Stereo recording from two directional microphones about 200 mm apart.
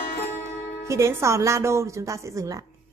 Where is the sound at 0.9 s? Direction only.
15° right (ahead or behind).